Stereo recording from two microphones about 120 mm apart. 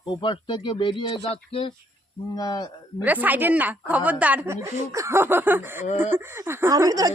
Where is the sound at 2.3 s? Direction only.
35° left (ahead or behind).